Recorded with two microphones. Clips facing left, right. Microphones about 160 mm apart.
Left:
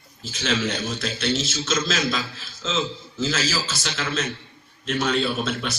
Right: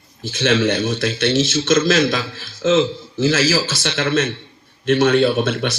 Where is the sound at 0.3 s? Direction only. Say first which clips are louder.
Right 8 dB; 70° right (ahead or behind).